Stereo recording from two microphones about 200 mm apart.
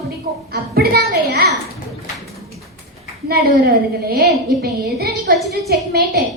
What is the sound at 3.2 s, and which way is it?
A woman's voice, 50° right (ahead or behind).